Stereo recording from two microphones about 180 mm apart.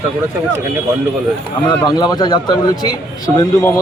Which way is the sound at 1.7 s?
20° left (ahead or behind).